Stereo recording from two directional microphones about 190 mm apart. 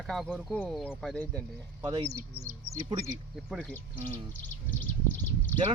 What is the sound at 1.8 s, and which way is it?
Speech, 15° right (ahead or behind).